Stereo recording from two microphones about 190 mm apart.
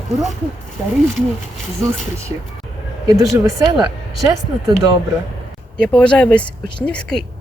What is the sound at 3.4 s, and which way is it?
Speech, 20° right (ahead or behind).